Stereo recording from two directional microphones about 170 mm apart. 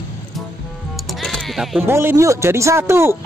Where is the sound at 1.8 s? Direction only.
15° right (ahead or behind).